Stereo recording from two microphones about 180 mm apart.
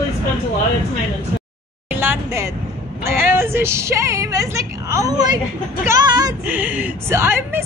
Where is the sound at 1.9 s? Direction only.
10° right (ahead or behind).